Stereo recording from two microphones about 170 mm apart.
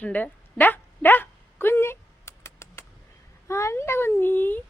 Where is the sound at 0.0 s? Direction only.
10° left (ahead or behind).